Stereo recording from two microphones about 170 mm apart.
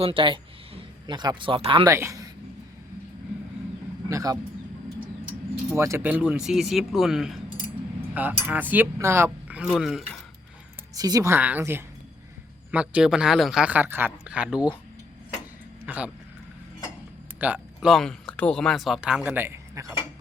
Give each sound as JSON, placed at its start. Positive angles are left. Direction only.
{"t": 0.0, "sound": "speech", "side_deg": -30}
{"t": 1.9, "sound": "speech", "side_deg": -15}
{"t": 4.1, "sound": "speech", "side_deg": -20}
{"t": 5.7, "sound": "a man's voice", "side_deg": -15}
{"t": 10.9, "sound": "a man's voice", "side_deg": -20}
{"t": 15.9, "sound": "speech", "side_deg": -10}
{"t": 17.4, "sound": "speech", "side_deg": -10}
{"t": 17.7, "sound": "speech", "side_deg": 0}